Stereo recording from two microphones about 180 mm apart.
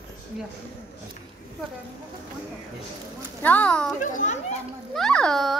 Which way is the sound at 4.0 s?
45° left (ahead or behind).